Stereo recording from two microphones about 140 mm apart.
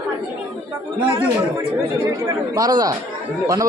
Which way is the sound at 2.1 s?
25° right (ahead or behind).